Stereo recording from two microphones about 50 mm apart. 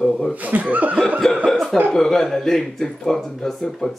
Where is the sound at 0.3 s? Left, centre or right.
Right.